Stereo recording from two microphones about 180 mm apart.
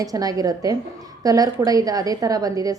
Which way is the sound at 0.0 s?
20° right (ahead or behind).